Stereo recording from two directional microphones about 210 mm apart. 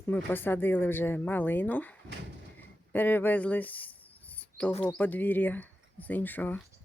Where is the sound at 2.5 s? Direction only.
10° left (ahead or behind).